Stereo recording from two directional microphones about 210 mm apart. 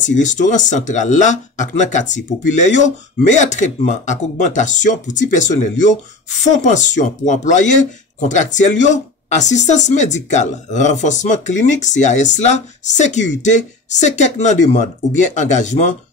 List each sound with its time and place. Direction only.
0.0 s speech: 35° left (ahead or behind)